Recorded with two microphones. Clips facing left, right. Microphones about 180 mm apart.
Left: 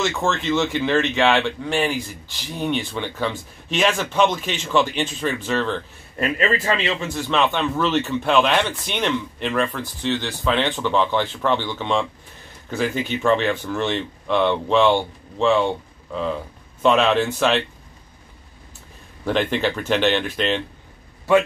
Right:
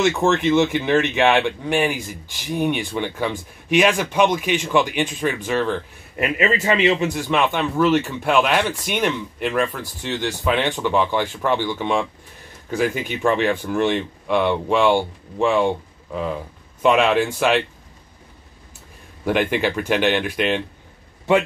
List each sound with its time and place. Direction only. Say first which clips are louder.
0.0 s speech: right 5 dB; 15° right (ahead or behind)
19.2 s speech: right 1 dB; 10° right (ahead or behind)